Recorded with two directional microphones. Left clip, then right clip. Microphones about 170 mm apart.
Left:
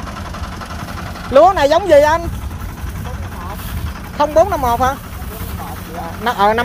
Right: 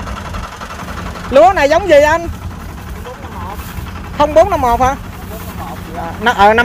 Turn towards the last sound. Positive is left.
turn(degrees=-30)  # may be behind; listen again after turning